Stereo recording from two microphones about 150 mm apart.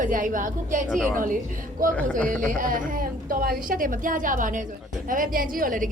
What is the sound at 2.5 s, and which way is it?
Speech, 65° right (ahead or behind).